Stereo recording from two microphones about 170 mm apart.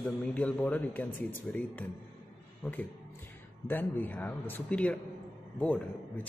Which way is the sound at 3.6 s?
10° left (ahead or behind).